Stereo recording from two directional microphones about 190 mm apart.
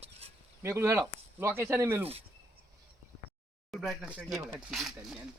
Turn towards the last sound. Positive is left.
turn(degrees=0)  # may be behind; listen again after turning